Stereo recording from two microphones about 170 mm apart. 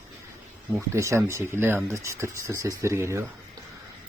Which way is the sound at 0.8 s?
15° right (ahead or behind).